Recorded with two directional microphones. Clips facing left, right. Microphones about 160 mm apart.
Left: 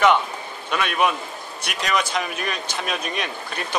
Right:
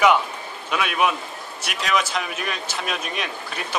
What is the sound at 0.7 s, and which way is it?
A man's voice, 5° right (ahead or behind).